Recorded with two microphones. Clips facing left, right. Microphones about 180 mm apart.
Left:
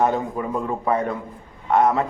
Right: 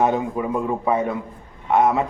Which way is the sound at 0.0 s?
10° right (ahead or behind).